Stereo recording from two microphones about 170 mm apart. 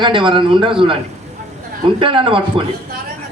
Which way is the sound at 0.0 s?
30° right (ahead or behind).